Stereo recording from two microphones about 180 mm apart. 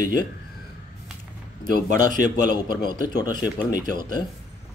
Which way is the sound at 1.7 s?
50° right (ahead or behind).